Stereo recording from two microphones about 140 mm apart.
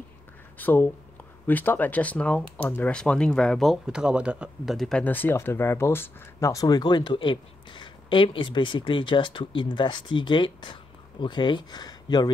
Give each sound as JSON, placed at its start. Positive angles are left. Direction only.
{"t": 0.6, "sound": "speech", "side_deg": 15}